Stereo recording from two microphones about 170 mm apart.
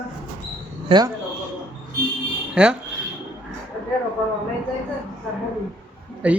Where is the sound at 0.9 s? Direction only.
25° right (ahead or behind).